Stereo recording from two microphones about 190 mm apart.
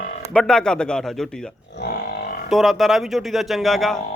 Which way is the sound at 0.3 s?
5° left (ahead or behind).